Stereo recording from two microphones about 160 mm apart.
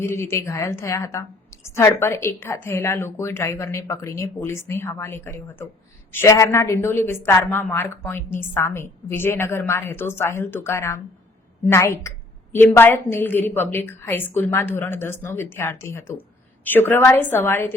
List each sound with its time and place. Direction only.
0.0 s speech: 15° left (ahead or behind)